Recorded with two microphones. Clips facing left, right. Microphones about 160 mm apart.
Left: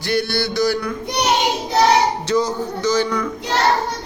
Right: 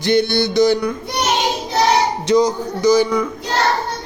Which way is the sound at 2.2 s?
15° right (ahead or behind).